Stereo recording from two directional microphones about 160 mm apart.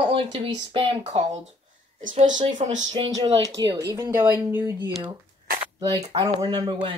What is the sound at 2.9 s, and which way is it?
Speech, 25° right (ahead or behind).